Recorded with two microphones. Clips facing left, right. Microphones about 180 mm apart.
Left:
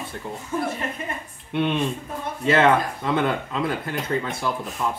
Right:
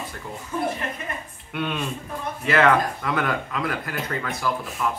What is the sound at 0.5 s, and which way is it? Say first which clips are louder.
Speech: even; 30° left (ahead or behind).